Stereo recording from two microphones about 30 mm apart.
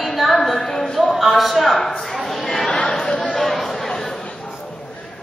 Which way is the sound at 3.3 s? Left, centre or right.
Centre.